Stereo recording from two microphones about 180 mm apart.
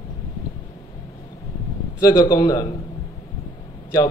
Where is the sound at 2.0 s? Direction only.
20° left (ahead or behind).